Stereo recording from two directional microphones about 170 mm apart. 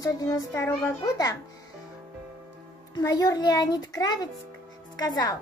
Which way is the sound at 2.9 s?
20° left (ahead or behind).